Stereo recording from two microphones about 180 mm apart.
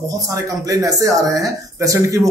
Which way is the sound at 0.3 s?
20° right (ahead or behind).